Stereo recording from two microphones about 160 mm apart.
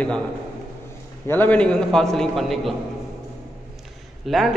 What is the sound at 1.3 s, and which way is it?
A man's voice, 10° left (ahead or behind).